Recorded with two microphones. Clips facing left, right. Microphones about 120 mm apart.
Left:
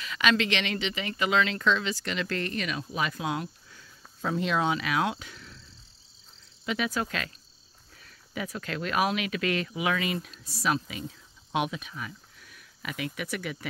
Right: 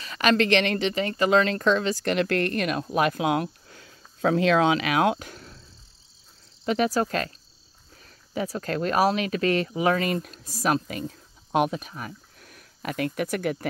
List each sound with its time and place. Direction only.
0.0 s speech: 40° right (ahead or behind)
6.6 s speech: 40° right (ahead or behind)